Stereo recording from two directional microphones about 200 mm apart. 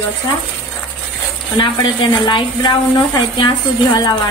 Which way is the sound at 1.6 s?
25° left (ahead or behind).